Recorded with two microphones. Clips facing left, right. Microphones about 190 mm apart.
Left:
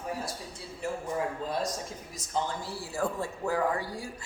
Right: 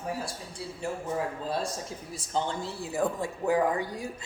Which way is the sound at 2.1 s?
25° right (ahead or behind).